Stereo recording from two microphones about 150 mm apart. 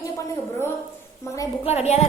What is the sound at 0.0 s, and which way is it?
Gargling, 20° left (ahead or behind).